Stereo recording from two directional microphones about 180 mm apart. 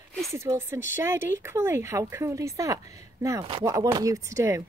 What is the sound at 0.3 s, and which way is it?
A woman's voice, 15° right (ahead or behind).